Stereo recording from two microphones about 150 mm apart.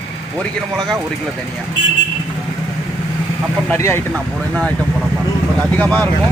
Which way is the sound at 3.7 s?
15° left (ahead or behind).